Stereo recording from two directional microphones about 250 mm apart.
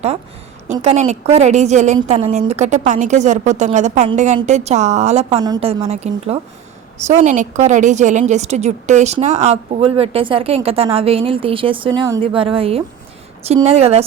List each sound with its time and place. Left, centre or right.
0.7 s a woman's voice: right